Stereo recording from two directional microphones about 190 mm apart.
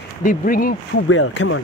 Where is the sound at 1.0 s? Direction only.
80° left.